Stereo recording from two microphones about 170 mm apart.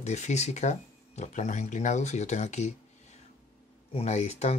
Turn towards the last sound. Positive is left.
turn(degrees=40)  # may be behind; listen again after turning